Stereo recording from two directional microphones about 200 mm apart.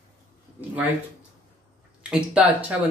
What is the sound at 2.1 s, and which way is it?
Speech, 5° right (ahead or behind).